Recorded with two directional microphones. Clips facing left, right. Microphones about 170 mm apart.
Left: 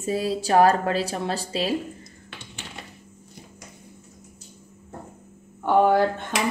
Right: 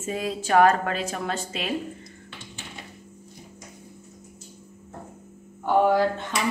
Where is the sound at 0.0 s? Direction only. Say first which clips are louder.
Left 4 dB; 35° left (ahead or behind).